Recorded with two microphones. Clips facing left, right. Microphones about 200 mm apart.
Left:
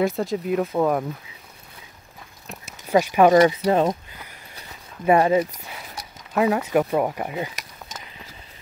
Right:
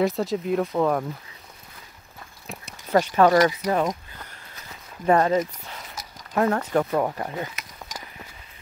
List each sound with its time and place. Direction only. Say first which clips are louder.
0.0 s speech: even; centre (ahead or behind)
2.4 s a sound: even; 5° left (ahead or behind)
3.6 s speech: left 4 dB; 25° left (ahead or behind)
5.0 s speech: left 2 dB; 10° left (ahead or behind)